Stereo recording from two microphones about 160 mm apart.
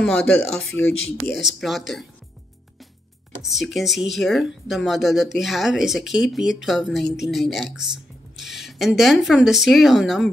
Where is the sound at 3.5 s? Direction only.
Centre (ahead or behind).